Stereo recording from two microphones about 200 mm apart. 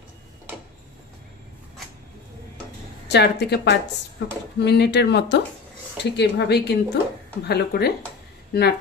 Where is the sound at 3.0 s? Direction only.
60° left (ahead or behind).